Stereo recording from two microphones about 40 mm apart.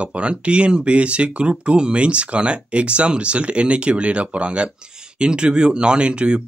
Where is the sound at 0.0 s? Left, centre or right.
Right.